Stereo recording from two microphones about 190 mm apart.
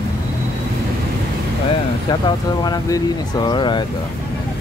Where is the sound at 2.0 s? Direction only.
20° left (ahead or behind).